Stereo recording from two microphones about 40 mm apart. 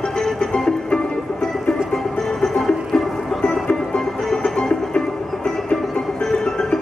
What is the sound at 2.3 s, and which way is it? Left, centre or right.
Music, centre.